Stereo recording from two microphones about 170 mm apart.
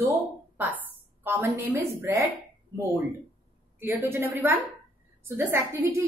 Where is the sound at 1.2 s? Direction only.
15° right (ahead or behind).